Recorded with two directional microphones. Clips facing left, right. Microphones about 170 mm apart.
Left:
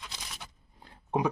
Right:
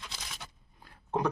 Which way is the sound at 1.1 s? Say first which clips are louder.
Left 2 dB; 10° left (ahead or behind).